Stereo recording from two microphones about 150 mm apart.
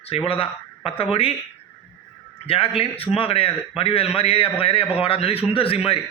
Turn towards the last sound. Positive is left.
turn(degrees=40)  # may be behind; listen again after turning